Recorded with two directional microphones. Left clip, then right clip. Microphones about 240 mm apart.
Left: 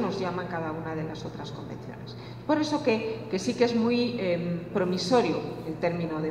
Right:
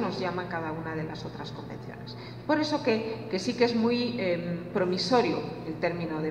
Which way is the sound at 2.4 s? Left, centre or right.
Left.